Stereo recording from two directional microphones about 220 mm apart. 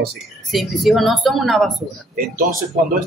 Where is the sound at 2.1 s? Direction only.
40° right (ahead or behind).